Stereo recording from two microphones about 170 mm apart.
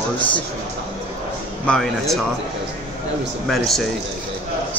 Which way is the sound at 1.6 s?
Centre (ahead or behind).